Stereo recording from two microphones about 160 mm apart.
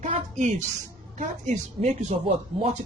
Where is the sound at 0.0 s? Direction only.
50° right (ahead or behind).